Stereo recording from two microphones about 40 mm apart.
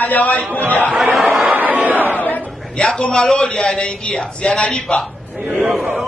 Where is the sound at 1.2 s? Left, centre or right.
Centre.